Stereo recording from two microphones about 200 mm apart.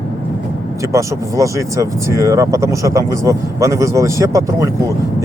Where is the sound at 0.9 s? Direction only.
15° right (ahead or behind).